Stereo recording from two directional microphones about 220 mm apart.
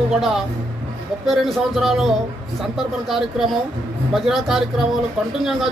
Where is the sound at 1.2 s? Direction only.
Centre (ahead or behind).